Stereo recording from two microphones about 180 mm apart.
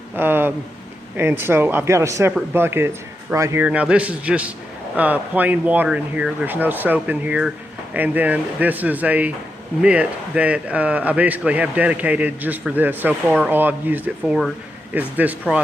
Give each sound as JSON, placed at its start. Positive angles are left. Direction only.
{"t": 0.2, "sound": "a man's voice", "side_deg": -10}